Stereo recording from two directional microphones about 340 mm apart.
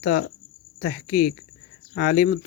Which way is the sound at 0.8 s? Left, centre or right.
Left.